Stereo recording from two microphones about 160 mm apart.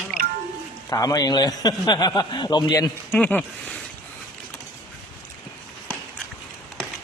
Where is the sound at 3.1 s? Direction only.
10° left (ahead or behind).